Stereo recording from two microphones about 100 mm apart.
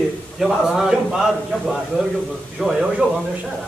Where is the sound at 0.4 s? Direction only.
5° right (ahead or behind).